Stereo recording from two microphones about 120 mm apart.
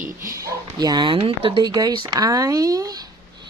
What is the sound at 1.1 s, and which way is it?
Speech, 50° right (ahead or behind).